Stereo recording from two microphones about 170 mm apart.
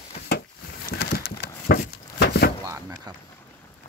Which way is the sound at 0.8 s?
65° left (ahead or behind).